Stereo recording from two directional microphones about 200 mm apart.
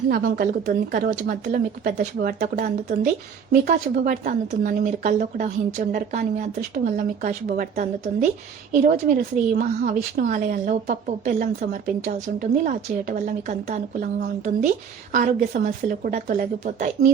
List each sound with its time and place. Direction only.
0.1 s a woman's voice: 45° right (ahead or behind)